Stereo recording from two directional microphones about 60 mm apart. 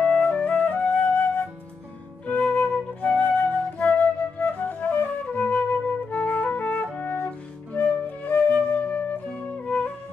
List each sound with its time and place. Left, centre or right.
0.0 s flute: centre
6.0 s music: left
7.7 s flute: left